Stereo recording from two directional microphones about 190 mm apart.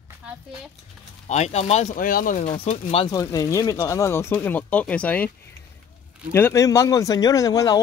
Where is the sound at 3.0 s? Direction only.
20° left (ahead or behind).